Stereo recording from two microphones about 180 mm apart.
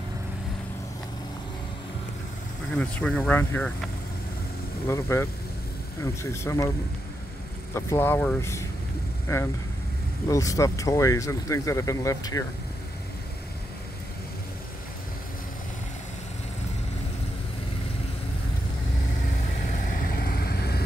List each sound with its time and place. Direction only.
2.7 s speech: 5° left (ahead or behind)
6.3 s speech: 15° left (ahead or behind)
7.7 s speech: 10° left (ahead or behind)
19.9 s vehicle: 50° left (ahead or behind)